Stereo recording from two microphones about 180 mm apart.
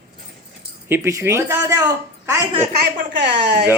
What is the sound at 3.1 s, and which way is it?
Speech, 70° right (ahead or behind).